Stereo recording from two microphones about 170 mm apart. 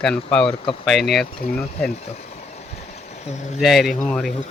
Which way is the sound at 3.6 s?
Centre (ahead or behind).